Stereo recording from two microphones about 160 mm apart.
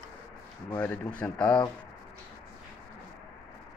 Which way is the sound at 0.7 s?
10° left (ahead or behind).